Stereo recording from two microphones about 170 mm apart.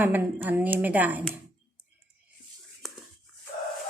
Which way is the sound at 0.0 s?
10° right (ahead or behind).